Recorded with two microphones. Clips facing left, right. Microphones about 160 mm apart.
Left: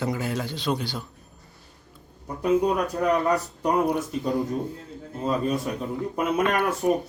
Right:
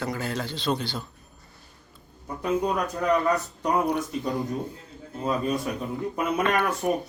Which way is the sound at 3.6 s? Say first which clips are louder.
Left 2 dB; 10° left (ahead or behind).